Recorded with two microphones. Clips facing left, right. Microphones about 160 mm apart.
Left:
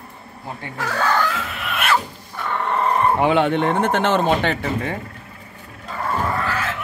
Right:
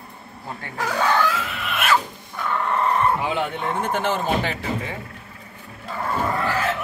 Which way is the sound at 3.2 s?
70° left (ahead or behind).